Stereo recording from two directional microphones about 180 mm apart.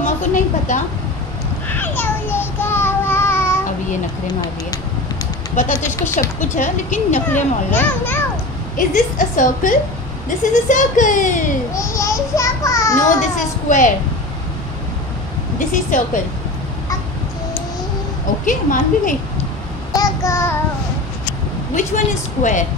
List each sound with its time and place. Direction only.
0.0 s a woman's voice: 40° left (ahead or behind)
1.7 s child singing: 10° left (ahead or behind)
5.6 s a woman's voice: 45° left (ahead or behind)
7.2 s a child's voice: 10° left (ahead or behind)
8.7 s a woman's voice: 45° left (ahead or behind)
11.7 s children playing: 15° left (ahead or behind)
13.2 s a woman's voice: 45° left (ahead or behind)
18.4 s a woman's voice: 45° left (ahead or behind)
19.9 s child singing: 20° left (ahead or behind)
21.7 s a woman's voice: 45° left (ahead or behind)